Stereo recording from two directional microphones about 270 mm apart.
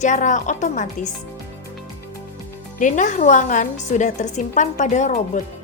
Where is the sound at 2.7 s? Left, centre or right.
Left.